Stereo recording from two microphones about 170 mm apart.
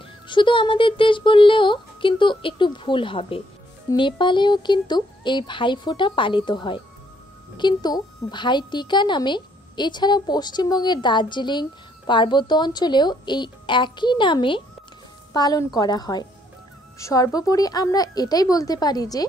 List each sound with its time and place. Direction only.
0.3 s a woman's voice: 30° left (ahead or behind)